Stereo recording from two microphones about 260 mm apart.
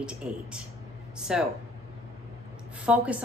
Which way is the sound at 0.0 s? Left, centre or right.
Centre.